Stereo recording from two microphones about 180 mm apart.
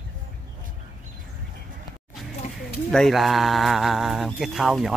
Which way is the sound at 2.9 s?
Centre (ahead or behind).